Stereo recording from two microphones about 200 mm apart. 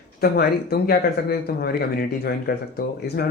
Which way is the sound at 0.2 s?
50° left (ahead or behind).